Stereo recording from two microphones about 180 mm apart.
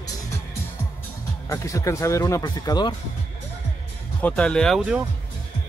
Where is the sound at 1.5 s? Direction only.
15° left (ahead or behind).